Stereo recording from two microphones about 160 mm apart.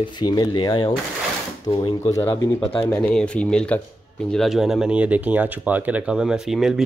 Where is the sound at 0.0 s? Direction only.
25° left (ahead or behind).